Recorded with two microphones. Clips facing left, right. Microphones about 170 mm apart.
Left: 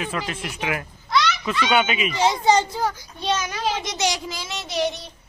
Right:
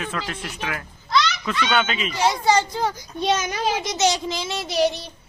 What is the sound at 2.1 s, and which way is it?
Speech, 20° left (ahead or behind).